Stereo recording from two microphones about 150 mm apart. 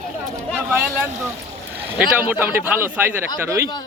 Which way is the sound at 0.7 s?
15° right (ahead or behind).